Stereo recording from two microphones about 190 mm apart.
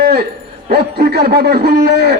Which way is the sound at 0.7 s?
55° right (ahead or behind).